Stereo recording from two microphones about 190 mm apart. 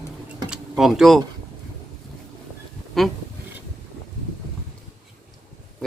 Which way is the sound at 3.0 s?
Centre (ahead or behind).